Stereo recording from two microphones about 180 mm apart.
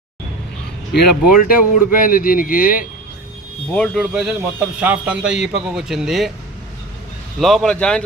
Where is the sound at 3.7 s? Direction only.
Centre (ahead or behind).